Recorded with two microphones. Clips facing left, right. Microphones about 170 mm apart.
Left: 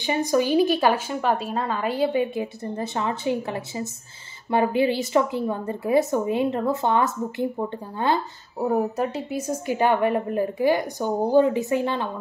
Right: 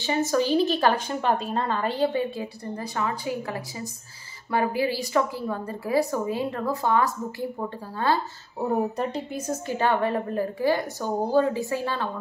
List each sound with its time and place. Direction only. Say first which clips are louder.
0.0 s a woman's voice: left 2 dB; 15° left (ahead or behind)
2.3 s speech: left 4 dB; 20° left (ahead or behind)
8.5 s a woman's voice: left 2 dB; 5° left (ahead or behind)